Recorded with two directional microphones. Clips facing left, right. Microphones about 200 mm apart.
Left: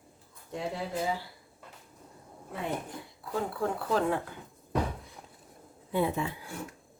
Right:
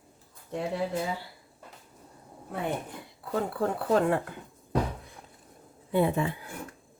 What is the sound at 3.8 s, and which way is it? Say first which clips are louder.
Speech: right 5 dB; 60° right (ahead or behind).